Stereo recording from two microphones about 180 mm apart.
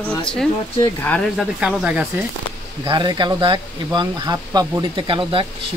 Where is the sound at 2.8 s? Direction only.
25° right (ahead or behind).